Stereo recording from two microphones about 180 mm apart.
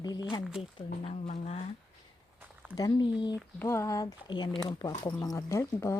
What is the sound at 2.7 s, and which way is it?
Speech, 20° left (ahead or behind).